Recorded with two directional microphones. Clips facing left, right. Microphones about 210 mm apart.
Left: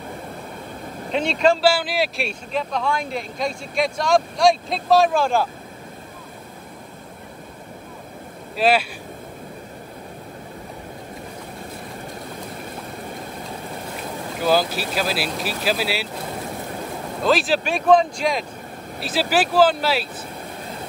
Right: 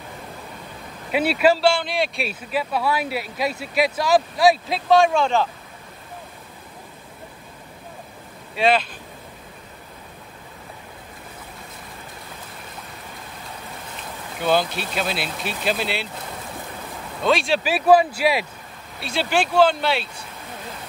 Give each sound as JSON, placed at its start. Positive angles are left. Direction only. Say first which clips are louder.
{"t": 1.1, "sound": "speech", "louder": "right 1 dB", "side_deg": -5}
{"t": 1.6, "sound": "speech", "louder": "left 1 dB", "side_deg": 5}
{"t": 8.5, "sound": "speech", "louder": "left 1 dB", "side_deg": 5}
{"t": 14.4, "sound": "speech", "louder": "left 1 dB", "side_deg": 0}
{"t": 17.2, "sound": "speech", "louder": "left 1 dB", "side_deg": 0}